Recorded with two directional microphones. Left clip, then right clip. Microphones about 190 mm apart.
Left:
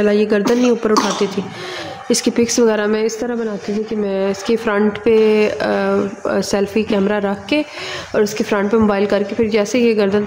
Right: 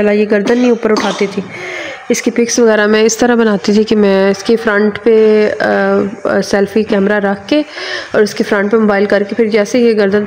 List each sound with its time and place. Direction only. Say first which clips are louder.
0.0 s a woman's voice: right 4 dB; 10° right (ahead or behind)
2.0 s speech: right 3 dB; 5° right (ahead or behind); by 4.3 s 30° right (ahead or behind)
4.3 s a woman's voice: right 6 dB; 15° right (ahead or behind)